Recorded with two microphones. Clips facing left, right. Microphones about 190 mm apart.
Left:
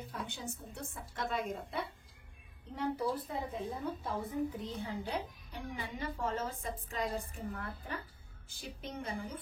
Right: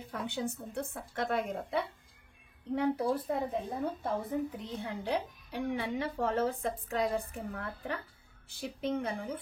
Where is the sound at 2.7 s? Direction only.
60° right (ahead or behind).